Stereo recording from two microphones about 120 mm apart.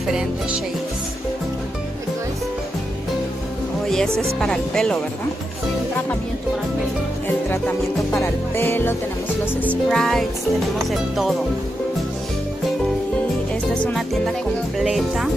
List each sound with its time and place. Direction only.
3.8 s speech: 5° left (ahead or behind)
7.2 s music: 15° left (ahead or behind)
9.8 s speech: 5° left (ahead or behind)
13.9 s speech: centre (ahead or behind)